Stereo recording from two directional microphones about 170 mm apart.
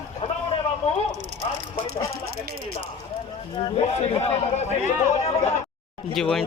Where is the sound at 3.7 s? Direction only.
40° left (ahead or behind).